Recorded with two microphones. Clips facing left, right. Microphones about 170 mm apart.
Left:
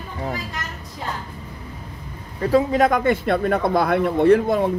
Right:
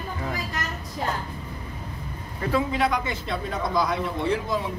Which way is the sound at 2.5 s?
45° left (ahead or behind).